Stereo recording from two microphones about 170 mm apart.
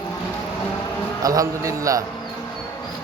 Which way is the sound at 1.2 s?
20° right (ahead or behind).